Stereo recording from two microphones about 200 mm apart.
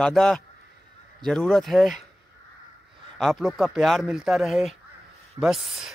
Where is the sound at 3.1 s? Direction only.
Centre (ahead or behind).